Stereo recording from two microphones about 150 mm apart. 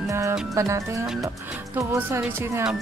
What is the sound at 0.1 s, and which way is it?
Speech, 20° right (ahead or behind).